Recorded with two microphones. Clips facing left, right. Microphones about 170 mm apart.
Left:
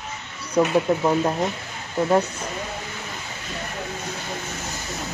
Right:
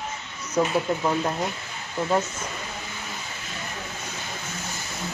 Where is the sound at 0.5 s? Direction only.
15° left (ahead or behind).